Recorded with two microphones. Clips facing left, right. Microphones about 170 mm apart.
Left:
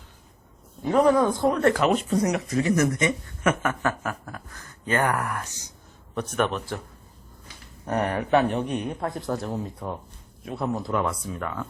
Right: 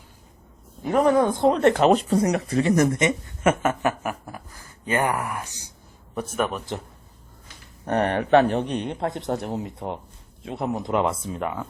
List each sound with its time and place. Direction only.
0.9 s speech: 20° right (ahead or behind)
1.9 s speech: 35° right (ahead or behind); by 6.6 s 5° right (ahead or behind)
7.9 s speech: 65° right (ahead or behind)
8.4 s speech: 35° right (ahead or behind)